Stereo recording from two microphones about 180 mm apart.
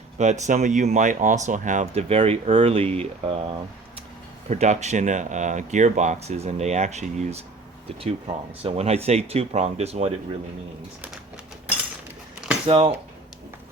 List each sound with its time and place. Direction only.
0.2 s speech: 40° right (ahead or behind)
12.6 s speech: 30° right (ahead or behind)